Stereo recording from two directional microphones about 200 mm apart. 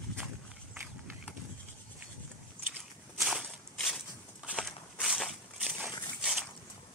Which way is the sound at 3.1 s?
Centre (ahead or behind).